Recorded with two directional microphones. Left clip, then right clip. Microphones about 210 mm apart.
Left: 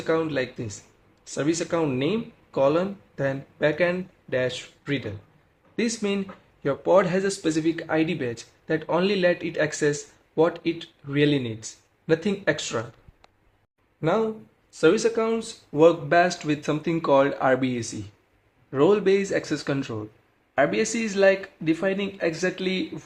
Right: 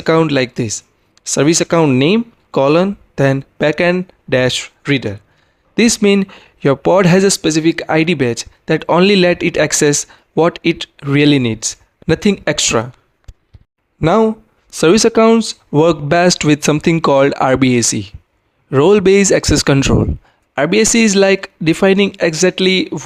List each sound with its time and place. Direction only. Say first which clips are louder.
0.0 s speech: right 12 dB; 50° right (ahead or behind)
14.0 s speech: right 12 dB; 50° right (ahead or behind)